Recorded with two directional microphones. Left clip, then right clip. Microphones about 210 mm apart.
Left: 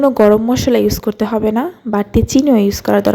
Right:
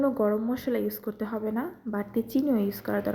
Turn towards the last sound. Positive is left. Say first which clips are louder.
# left 16 dB
turn(degrees=45)  # may be behind; listen again after turning